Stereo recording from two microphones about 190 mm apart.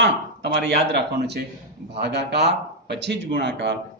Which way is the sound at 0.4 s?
65° right (ahead or behind).